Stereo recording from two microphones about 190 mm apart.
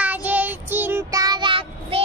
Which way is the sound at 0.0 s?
10° right (ahead or behind).